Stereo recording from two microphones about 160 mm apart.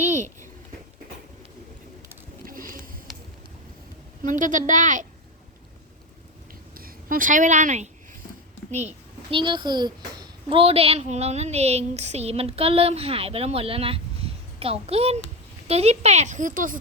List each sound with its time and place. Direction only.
2.4 s a sound: 60° right (ahead or behind)
4.2 s speech: 55° right (ahead or behind)
6.7 s a woman's voice: 65° right (ahead or behind); by 9.0 s 45° right (ahead or behind)
9.3 s a child's voice: 30° right (ahead or behind); by 16.7 s 55° right (ahead or behind)